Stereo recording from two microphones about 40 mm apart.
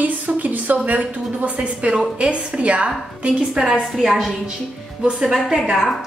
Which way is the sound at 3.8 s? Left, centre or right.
Centre.